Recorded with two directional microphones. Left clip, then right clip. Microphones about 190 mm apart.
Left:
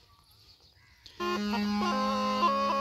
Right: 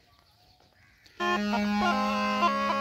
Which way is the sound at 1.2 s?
5° right (ahead or behind).